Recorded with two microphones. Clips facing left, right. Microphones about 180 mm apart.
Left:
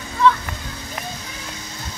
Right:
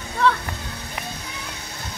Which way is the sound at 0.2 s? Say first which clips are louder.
Left 3 dB; 65° right (ahead or behind).